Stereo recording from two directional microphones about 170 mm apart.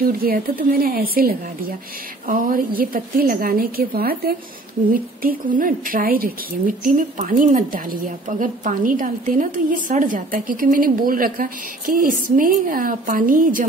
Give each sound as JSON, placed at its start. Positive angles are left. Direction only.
{"t": 0.0, "sound": "a woman's voice", "side_deg": -60}
{"t": 5.2, "sound": "a woman's voice", "side_deg": -55}